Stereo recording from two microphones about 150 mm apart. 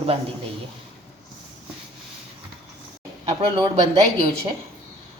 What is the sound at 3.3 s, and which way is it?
Speech, 35° right (ahead or behind).